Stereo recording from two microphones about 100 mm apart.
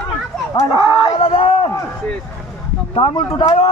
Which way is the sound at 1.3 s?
70° left (ahead or behind).